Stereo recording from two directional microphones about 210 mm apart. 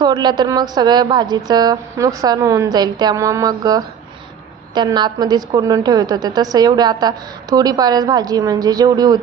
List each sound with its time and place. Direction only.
0.0 s a woman's voice: 20° right (ahead or behind)